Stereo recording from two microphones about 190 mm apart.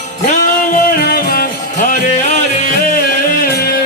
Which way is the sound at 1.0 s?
50° left (ahead or behind).